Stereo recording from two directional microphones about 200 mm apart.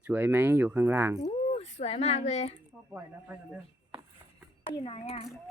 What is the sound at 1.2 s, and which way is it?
A child's voice, 30° left (ahead or behind).